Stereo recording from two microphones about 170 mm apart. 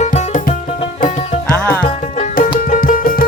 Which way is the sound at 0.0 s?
45° left (ahead or behind).